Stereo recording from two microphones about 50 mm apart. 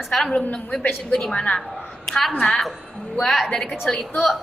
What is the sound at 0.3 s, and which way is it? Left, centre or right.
A woman's voice, left.